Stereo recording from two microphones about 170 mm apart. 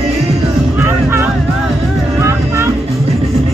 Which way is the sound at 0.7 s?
10° right (ahead or behind).